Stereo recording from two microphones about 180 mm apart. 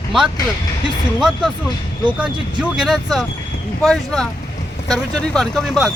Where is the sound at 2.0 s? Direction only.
5° right (ahead or behind).